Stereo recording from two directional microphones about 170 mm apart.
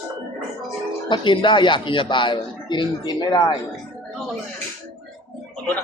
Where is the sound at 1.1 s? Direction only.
30° left (ahead or behind).